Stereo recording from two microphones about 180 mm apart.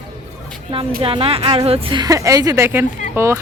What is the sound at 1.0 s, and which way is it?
A woman's voice, 30° right (ahead or behind).